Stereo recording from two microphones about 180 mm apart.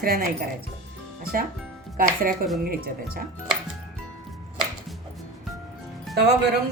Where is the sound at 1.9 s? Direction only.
50° right (ahead or behind).